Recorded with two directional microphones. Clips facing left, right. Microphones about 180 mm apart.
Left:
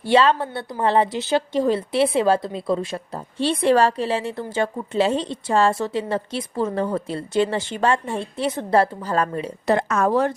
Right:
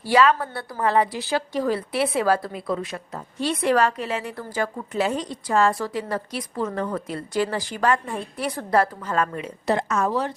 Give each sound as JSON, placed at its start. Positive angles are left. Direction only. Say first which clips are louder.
{"t": 0.0, "sound": "a woman's voice", "louder": "left 2 dB", "side_deg": 25}
{"t": 9.6, "sound": "a woman's voice", "louder": "left 3 dB", "side_deg": 60}